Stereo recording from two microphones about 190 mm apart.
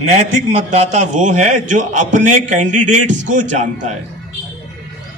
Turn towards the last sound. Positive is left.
turn(degrees=-40)  # may be behind; listen again after turning